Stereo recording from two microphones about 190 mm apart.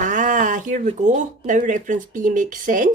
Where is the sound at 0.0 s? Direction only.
40° right (ahead or behind).